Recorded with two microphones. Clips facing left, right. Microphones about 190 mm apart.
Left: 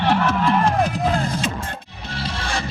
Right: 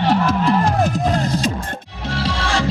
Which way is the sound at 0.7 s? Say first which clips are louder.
Right 2 dB; 40° right (ahead or behind).